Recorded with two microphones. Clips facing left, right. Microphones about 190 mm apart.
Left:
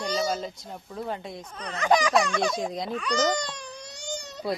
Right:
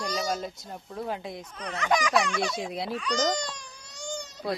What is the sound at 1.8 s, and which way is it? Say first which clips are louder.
Speech: left 4 dB; 35° left (ahead or behind).